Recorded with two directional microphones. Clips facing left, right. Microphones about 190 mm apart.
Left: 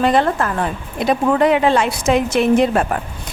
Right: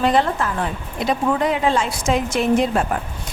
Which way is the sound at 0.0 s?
55° left (ahead or behind).